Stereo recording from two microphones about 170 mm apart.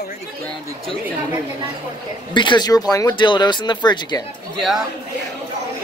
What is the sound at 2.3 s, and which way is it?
Speech, 25° left (ahead or behind).